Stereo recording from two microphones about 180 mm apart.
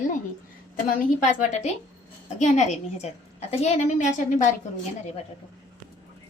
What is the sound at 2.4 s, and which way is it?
A woman's voice, 40° left (ahead or behind).